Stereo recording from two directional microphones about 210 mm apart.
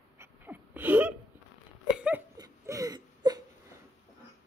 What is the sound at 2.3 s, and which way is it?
Whimper, 15° right (ahead or behind).